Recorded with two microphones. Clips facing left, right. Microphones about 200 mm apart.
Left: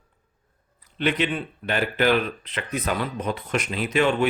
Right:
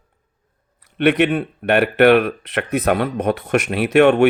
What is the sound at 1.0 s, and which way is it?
Speech, 65° right (ahead or behind).